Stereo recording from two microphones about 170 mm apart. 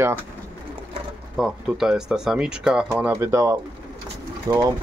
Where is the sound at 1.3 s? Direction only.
Centre (ahead or behind).